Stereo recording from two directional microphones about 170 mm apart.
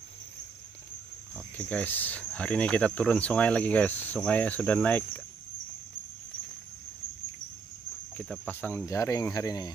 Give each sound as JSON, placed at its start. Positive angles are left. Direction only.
{"t": 1.3, "sound": "speech", "side_deg": 10}
{"t": 8.2, "sound": "speech", "side_deg": 10}